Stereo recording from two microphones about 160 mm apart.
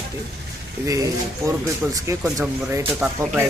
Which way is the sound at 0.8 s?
20° right (ahead or behind).